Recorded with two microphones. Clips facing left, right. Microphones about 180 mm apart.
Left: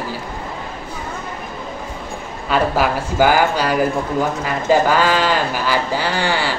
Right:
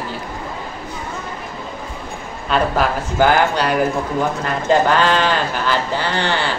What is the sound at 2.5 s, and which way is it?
Speech, 5° left (ahead or behind).